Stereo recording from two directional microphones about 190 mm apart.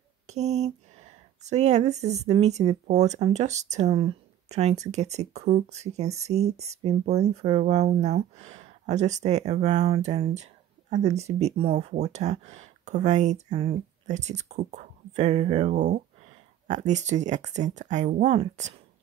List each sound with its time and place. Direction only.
0.3 s speech: 35° right (ahead or behind)